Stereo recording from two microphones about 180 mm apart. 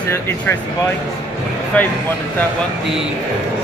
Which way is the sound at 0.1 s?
10° left (ahead or behind).